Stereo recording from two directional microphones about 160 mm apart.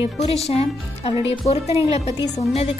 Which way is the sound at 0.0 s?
40° left (ahead or behind).